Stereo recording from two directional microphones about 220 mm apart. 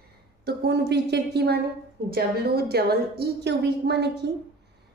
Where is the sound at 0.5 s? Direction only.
50° right (ahead or behind).